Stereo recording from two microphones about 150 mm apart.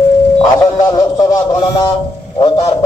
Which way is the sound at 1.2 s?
25° left (ahead or behind).